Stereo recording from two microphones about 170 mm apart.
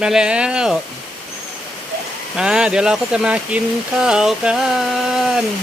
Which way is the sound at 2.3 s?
5° right (ahead or behind).